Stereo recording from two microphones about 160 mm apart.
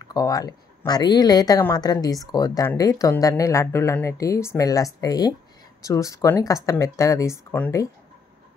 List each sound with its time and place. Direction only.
0.0 s speech: 25° left (ahead or behind)